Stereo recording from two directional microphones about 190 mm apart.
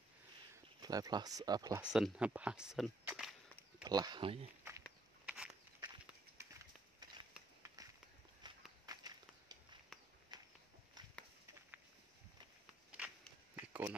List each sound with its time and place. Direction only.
0.8 s speech: 20° right (ahead or behind)
1.8 s speech: 5° right (ahead or behind)
3.8 s speech: 20° right (ahead or behind)
4.6 s walk: 10° right (ahead or behind)
7.6 s run: 20° right (ahead or behind)
8.4 s walk: 20° right (ahead or behind)
9.9 s walk: centre (ahead or behind)
10.3 s walk: 20° right (ahead or behind)
13.6 s a sound: 10° right (ahead or behind)